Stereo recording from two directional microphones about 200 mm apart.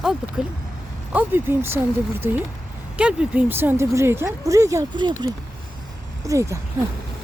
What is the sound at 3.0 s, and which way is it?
Speech, 5° right (ahead or behind).